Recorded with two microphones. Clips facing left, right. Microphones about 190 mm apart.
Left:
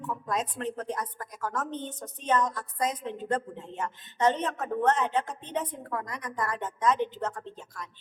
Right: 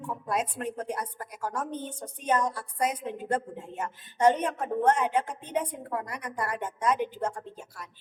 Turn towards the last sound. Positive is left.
turn(degrees=-10)  # may be behind; listen again after turning